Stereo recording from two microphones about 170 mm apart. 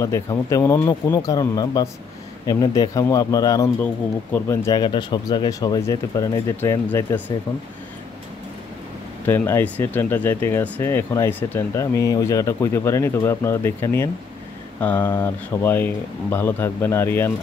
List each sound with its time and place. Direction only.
0.0 s speech: 20° left (ahead or behind)
4.8 s speech: 25° left (ahead or behind)
9.2 s speech: 15° left (ahead or behind)